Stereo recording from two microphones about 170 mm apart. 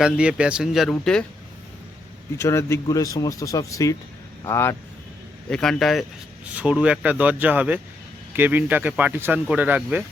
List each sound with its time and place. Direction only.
0.0 s speech: 5° right (ahead or behind)
2.4 s speech: 15° left (ahead or behind)
5.5 s speech: 5° left (ahead or behind)